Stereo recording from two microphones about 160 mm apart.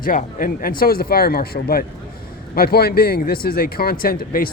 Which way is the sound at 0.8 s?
70° left (ahead or behind).